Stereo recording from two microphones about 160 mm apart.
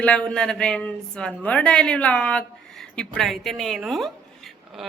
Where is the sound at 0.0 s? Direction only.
5° left (ahead or behind).